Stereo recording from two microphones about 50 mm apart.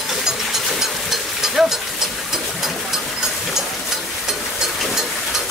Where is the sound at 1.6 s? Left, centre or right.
Centre.